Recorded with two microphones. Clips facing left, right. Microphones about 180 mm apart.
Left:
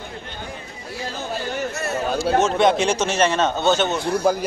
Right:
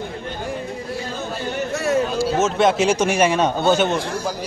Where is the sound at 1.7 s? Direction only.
90° right.